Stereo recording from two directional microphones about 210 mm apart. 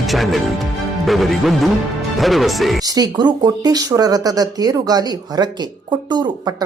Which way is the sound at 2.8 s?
15° right (ahead or behind).